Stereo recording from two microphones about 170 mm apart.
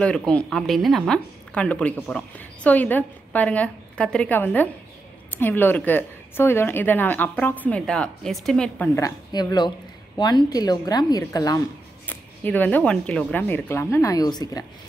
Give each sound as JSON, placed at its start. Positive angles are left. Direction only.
{"t": 0.0, "sound": "a woman's voice", "side_deg": 5}
{"t": 9.0, "sound": "a woman's voice", "side_deg": 25}
{"t": 12.1, "sound": "a woman's voice", "side_deg": 10}